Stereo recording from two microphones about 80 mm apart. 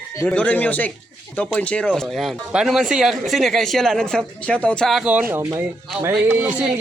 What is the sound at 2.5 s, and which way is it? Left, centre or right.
Speech, centre.